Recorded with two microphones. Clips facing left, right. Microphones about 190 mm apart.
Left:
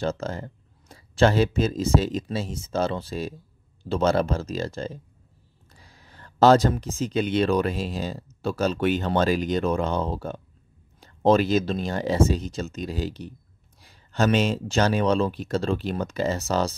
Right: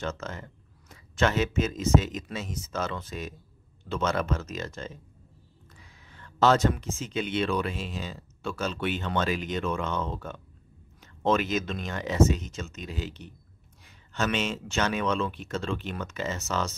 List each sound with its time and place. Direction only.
0.0 s speech: 35° left (ahead or behind)